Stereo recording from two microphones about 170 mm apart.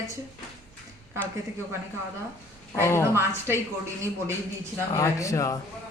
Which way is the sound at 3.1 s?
15° right (ahead or behind).